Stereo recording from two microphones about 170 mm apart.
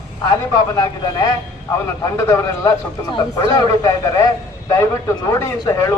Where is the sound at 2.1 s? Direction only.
15° left (ahead or behind).